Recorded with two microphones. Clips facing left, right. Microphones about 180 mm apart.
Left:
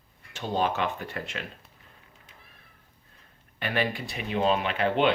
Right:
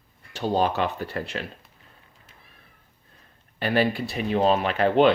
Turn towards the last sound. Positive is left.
turn(degrees=-40)  # may be behind; listen again after turning